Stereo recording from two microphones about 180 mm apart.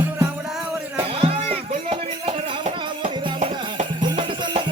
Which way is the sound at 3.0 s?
45° right (ahead or behind).